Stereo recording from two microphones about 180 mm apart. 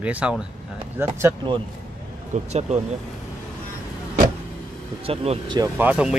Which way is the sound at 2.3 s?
40° right (ahead or behind).